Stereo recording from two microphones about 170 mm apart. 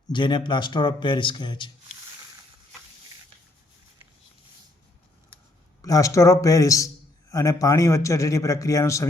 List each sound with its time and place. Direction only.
0.1 s a man's voice: 30° left (ahead or behind)
5.8 s a man's voice: 20° left (ahead or behind)